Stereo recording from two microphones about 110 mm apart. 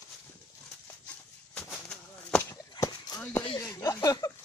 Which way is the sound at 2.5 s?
35° left (ahead or behind).